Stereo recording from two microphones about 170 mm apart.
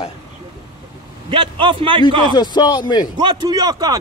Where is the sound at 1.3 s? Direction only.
30° right (ahead or behind).